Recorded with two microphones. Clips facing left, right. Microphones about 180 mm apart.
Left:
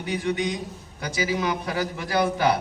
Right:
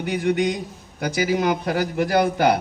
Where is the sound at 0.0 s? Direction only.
55° right (ahead or behind).